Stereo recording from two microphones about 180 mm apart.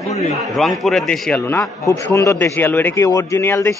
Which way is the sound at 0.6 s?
Centre (ahead or behind).